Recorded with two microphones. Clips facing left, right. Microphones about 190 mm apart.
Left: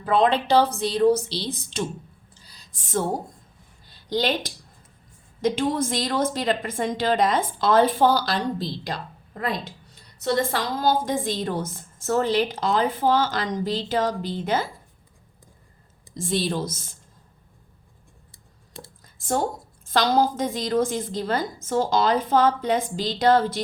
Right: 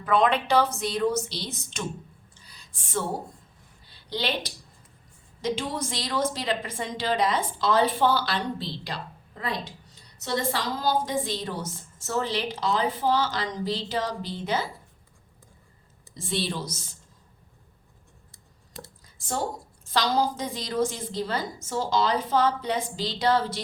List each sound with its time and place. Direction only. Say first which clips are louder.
0.0 s a woman's voice: left 2 dB; 30° left (ahead or behind)
2.3 s a sound: left 1 dB; 35° left (ahead or behind)
3.8 s a woman's voice: left 6 dB; 45° left (ahead or behind)
16.1 s a woman's voice: left 5 dB; 45° left (ahead or behind)
19.0 s a sound: left 6 dB; 50° left (ahead or behind)
19.9 s a woman's voice: left 4 dB; 50° left (ahead or behind)